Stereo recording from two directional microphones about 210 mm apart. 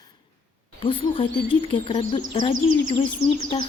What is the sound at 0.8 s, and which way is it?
Speech, 25° left (ahead or behind).